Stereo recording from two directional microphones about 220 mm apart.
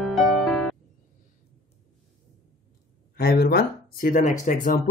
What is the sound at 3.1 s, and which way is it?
Speech, 45° left (ahead or behind).